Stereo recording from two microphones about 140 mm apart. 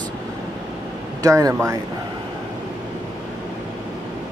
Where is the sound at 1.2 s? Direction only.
20° right (ahead or behind).